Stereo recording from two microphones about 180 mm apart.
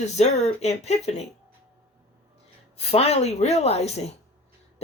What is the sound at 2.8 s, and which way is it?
Speech, 35° left (ahead or behind).